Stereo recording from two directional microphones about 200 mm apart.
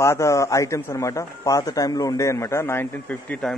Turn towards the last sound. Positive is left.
turn(degrees=5)  # may be behind; listen again after turning